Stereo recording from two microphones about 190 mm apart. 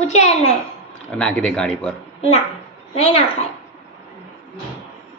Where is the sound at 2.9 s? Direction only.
35° left (ahead or behind).